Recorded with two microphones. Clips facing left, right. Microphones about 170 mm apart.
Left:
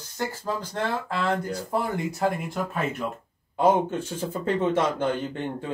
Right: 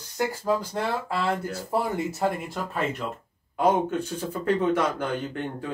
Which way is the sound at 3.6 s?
25° left (ahead or behind).